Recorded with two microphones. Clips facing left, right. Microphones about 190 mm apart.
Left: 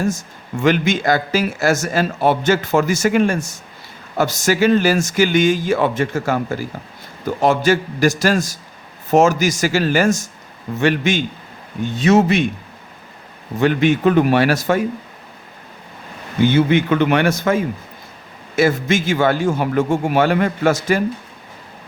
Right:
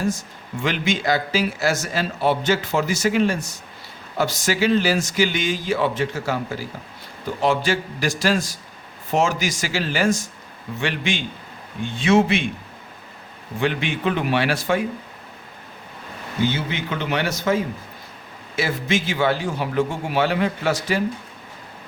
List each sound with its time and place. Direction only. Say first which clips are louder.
0.0 s speech: left 3 dB; 45° left (ahead or behind)
13.6 s speech: left 8 dB; 45° left (ahead or behind)
16.4 s a man's voice: left 9 dB; 55° left (ahead or behind)